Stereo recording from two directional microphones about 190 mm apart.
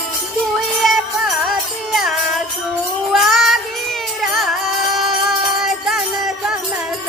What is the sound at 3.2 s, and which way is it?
Child singing, centre (ahead or behind).